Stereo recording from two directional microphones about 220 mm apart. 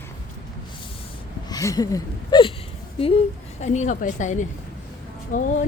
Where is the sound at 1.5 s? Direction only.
15° left (ahead or behind).